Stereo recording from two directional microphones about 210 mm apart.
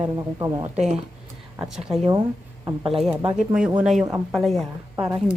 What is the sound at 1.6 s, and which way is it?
A woman's voice, 5° right (ahead or behind).